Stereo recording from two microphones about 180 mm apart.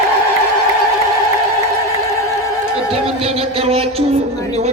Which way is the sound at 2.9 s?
35° right (ahead or behind).